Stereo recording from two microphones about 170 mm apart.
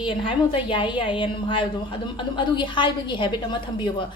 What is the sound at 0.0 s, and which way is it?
A woman's voice, 30° left (ahead or behind).